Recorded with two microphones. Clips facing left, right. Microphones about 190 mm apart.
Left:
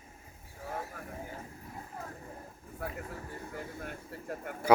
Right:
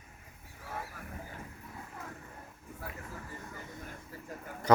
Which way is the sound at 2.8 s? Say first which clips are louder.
Left 6 dB; 60° left (ahead or behind).